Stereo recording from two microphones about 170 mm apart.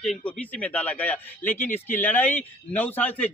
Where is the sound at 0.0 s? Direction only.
5° left (ahead or behind).